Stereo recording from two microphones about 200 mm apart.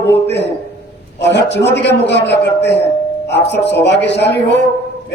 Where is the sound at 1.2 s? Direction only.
60° left (ahead or behind).